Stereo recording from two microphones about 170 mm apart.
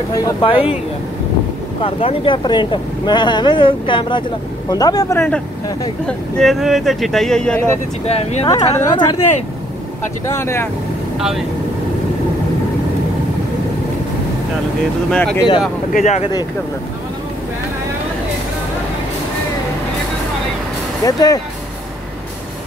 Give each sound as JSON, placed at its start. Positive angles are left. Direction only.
{"t": 0.1, "sound": "speech", "side_deg": 30}
{"t": 1.8, "sound": "speech", "side_deg": 35}
{"t": 6.0, "sound": "speech", "side_deg": 5}
{"t": 8.1, "sound": "speech", "side_deg": 40}
{"t": 8.5, "sound": "speech", "side_deg": 25}
{"t": 10.3, "sound": "speech", "side_deg": 15}
{"t": 15.0, "sound": "speech", "side_deg": 5}
{"t": 15.9, "sound": "speech", "side_deg": 45}
{"t": 21.0, "sound": "speech", "side_deg": 20}